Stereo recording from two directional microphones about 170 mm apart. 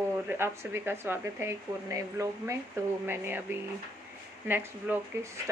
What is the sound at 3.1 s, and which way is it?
Speech, 10° right (ahead or behind).